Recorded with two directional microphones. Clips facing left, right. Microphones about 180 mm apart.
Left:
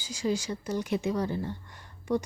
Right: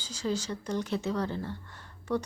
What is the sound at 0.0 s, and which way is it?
Speech, 10° left (ahead or behind).